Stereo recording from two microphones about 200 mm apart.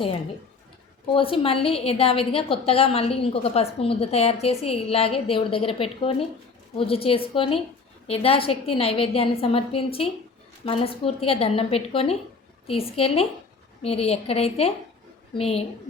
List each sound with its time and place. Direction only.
1.1 s a woman's voice: 25° left (ahead or behind)